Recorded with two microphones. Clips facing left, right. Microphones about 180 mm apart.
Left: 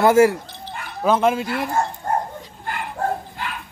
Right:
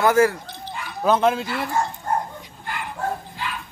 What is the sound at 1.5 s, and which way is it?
Bow-wow, 50° left (ahead or behind).